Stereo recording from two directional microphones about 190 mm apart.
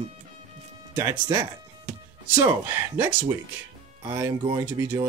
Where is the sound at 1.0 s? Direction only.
15° right (ahead or behind).